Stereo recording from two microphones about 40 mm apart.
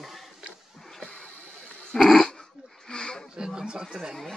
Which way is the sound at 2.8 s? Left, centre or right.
Centre.